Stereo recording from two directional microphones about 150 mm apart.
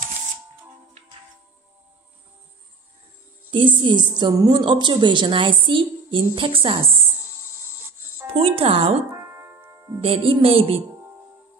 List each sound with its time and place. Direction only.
3.4 s a woman's voice: 35° right (ahead or behind)
8.3 s a woman's voice: 40° right (ahead or behind)
9.3 s keyboard: 15° right (ahead or behind)
9.9 s a woman's voice: 35° right (ahead or behind)